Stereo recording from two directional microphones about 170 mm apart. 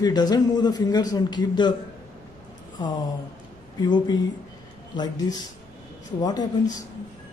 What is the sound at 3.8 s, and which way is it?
A man's voice, 25° left (ahead or behind).